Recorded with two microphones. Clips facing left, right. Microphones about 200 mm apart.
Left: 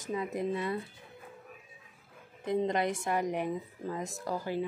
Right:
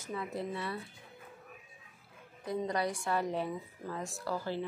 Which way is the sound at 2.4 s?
20° left (ahead or behind).